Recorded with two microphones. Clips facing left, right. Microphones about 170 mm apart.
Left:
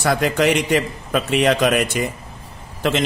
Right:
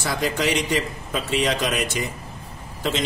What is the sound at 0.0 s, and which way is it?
A man's voice, 60° left (ahead or behind).